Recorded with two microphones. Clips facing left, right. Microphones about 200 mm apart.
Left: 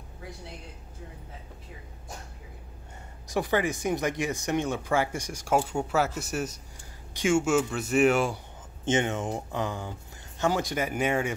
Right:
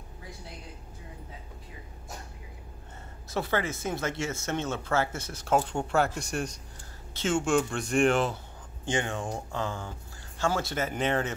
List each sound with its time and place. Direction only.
3.3 s speech: 15° left (ahead or behind)
8.8 s speech: 20° left (ahead or behind)